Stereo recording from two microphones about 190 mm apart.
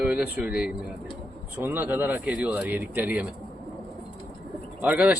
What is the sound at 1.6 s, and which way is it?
A man's voice, 10° right (ahead or behind).